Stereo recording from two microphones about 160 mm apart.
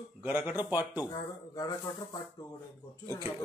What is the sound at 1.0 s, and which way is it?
Speech, 20° left (ahead or behind).